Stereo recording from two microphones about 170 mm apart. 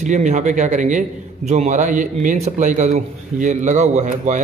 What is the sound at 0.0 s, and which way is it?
A man's voice, 45° right (ahead or behind).